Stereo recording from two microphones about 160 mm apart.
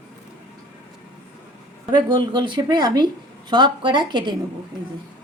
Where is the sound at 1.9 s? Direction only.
25° right (ahead or behind).